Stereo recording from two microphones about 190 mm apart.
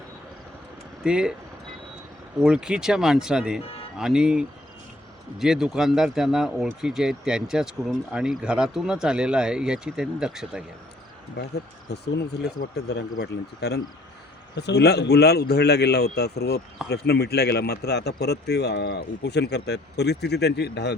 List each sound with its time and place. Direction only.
1.0 s speech: 5° right (ahead or behind)
2.4 s speech: 5° right (ahead or behind)
11.3 s a man's voice: 60° left (ahead or behind)